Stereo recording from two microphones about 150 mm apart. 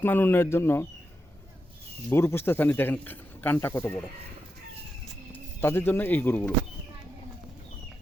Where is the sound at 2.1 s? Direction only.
15° left (ahead or behind).